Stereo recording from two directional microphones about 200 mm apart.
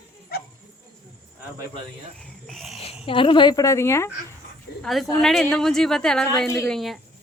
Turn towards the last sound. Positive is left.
turn(degrees=0)  # may be behind; listen again after turning